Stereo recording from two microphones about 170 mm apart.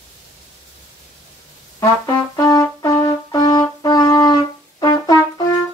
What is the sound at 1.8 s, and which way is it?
Brass instrument, 20° left (ahead or behind).